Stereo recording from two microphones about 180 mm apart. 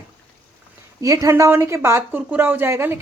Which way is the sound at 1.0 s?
20° right (ahead or behind).